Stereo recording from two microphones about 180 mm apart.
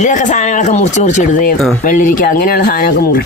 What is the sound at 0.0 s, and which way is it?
Speech, 45° left (ahead or behind).